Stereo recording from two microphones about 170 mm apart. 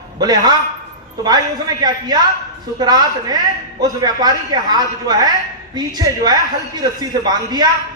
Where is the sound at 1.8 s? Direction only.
25° right (ahead or behind).